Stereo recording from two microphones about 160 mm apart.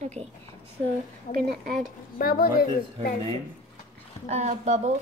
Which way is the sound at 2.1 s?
65° left (ahead or behind).